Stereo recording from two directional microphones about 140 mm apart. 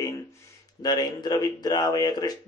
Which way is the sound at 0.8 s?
30° left (ahead or behind).